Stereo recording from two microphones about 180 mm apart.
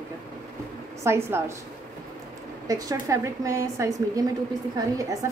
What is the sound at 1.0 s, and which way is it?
Speech, 15° right (ahead or behind).